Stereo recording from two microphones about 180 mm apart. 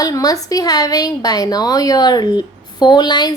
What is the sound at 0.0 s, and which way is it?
A woman's voice, 20° left (ahead or behind).